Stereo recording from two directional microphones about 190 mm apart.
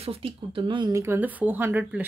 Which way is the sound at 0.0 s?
30° right (ahead or behind).